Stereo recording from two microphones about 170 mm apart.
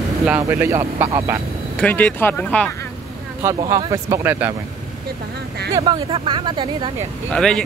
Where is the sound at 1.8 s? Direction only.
10° left (ahead or behind).